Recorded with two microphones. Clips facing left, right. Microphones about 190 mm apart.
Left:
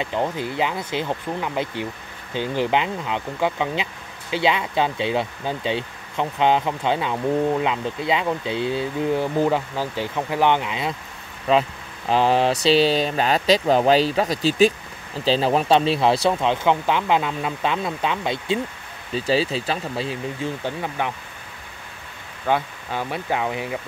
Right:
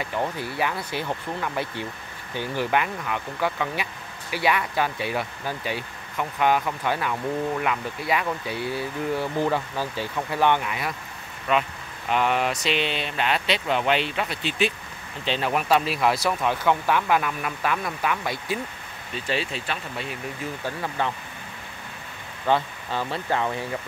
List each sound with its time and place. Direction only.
0.0 s speech: 20° left (ahead or behind)
19.1 s speech: 35° left (ahead or behind)
20.6 s speech: 15° left (ahead or behind)
22.5 s speech: 10° left (ahead or behind)